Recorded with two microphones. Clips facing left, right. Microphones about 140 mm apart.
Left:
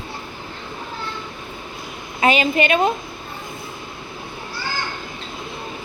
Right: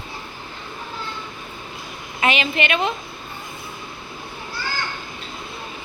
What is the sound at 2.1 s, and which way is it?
Speech, 35° left (ahead or behind).